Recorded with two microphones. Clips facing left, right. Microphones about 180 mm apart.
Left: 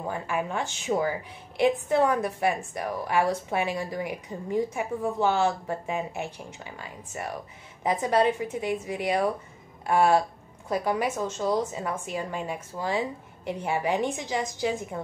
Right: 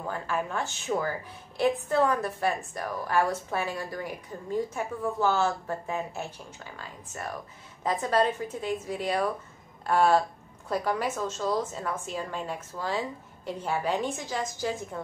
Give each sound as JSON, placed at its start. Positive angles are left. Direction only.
{"t": 0.0, "sound": "a woman's voice", "side_deg": 15}